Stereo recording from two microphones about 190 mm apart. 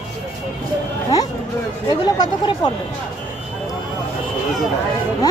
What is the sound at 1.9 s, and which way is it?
Speech, 20° left (ahead or behind).